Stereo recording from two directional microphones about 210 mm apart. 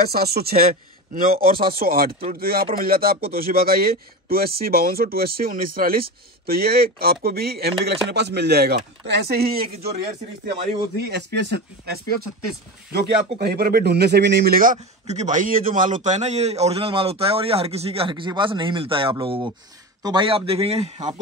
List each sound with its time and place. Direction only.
0.0 s speech: 50° right (ahead or behind)
13.4 s a man's voice: 50° right (ahead or behind); by 21.1 s 30° right (ahead or behind)